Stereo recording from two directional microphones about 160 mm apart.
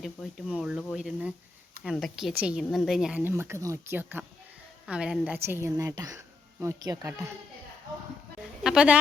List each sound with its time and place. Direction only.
0.0 s a woman's voice: centre (ahead or behind); by 7.1 s 25° right (ahead or behind)
8.6 s speech: 5° right (ahead or behind)